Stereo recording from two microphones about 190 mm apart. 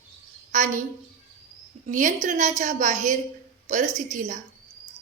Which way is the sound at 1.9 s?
40° right (ahead or behind).